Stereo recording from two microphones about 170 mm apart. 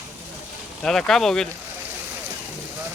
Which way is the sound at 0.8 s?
Centre (ahead or behind).